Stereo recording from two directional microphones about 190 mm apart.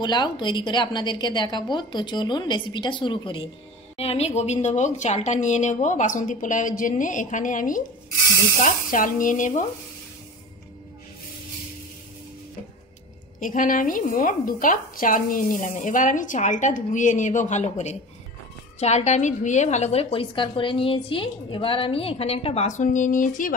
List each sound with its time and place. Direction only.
0.0 s a woman's voice: 25° left (ahead or behind); by 9.7 s 40° left (ahead or behind)
13.4 s a woman's voice: 45° left (ahead or behind)